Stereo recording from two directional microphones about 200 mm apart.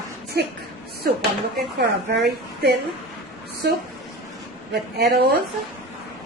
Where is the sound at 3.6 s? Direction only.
50° right (ahead or behind).